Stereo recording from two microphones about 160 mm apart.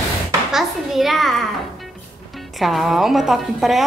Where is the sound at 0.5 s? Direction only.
Centre (ahead or behind).